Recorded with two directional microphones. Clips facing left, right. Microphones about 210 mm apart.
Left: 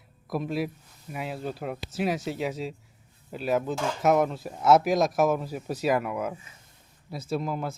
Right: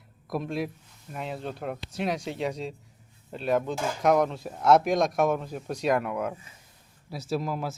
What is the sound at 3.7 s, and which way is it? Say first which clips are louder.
Speech: left 1 dB; 10° right (ahead or behind).